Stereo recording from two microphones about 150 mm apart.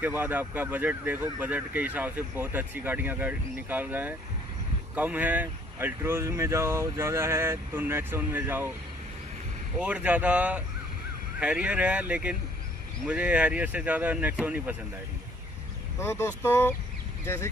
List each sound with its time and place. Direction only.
0.0 s speech: 10° right (ahead or behind)
9.8 s speech: 10° right (ahead or behind)
16.0 s speech: 15° left (ahead or behind)